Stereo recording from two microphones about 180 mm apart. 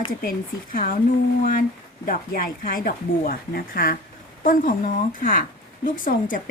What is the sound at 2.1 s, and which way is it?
A woman's voice, 55° left (ahead or behind).